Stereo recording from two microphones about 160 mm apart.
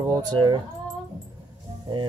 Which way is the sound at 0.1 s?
25° right (ahead or behind).